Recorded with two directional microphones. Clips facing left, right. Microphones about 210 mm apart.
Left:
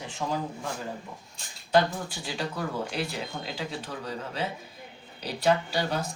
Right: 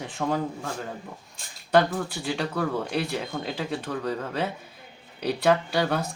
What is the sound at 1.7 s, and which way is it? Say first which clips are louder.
Speech: right 3 dB; 60° right (ahead or behind).